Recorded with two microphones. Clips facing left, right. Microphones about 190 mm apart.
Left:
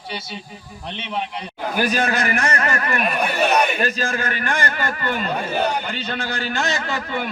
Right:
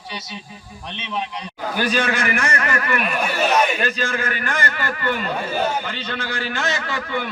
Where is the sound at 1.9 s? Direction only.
40° left (ahead or behind).